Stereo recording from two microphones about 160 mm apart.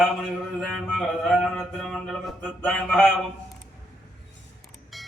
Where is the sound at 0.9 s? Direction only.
Centre (ahead or behind).